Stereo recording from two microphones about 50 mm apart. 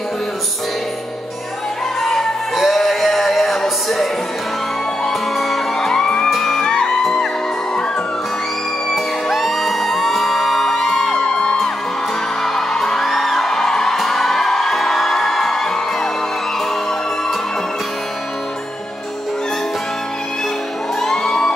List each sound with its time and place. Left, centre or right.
2.5 s music: centre
5.4 s music: centre
6.3 s music: centre
6.7 s music: centre
9.3 s music: centre
12.5 s music: centre
21.0 s music: centre